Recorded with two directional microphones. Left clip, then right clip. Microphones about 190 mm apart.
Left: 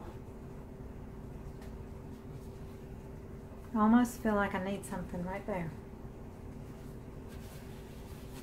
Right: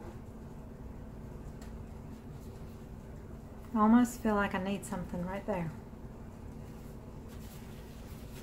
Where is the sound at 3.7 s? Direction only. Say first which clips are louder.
Right 1 dB; centre (ahead or behind); by 5.6 s 15° right (ahead or behind).